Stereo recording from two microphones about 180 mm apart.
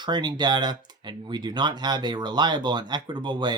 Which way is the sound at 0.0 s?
25° right (ahead or behind).